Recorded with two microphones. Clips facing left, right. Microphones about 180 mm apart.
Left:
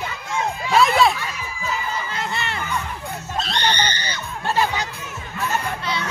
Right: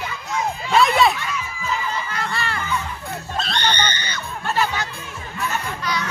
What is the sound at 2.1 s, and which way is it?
Music, 20° left (ahead or behind).